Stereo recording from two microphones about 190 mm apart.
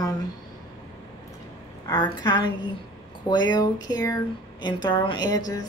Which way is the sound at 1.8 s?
20° left (ahead or behind).